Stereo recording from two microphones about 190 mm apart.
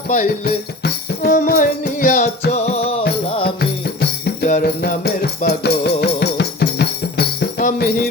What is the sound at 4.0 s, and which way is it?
Music, 60° left (ahead or behind).